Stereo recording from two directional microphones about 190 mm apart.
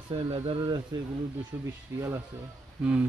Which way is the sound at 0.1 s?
30° right (ahead or behind).